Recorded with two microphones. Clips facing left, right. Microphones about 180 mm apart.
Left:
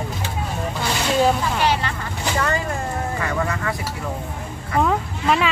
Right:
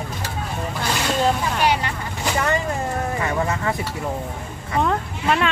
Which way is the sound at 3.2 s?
25° right (ahead or behind).